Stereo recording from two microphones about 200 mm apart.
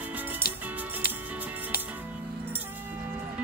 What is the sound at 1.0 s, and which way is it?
Music, 45° left (ahead or behind).